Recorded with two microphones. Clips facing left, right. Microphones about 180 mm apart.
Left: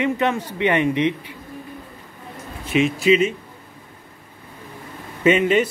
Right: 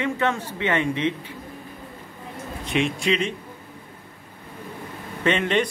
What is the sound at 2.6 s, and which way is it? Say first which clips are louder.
Speech: left 5 dB; centre (ahead or behind).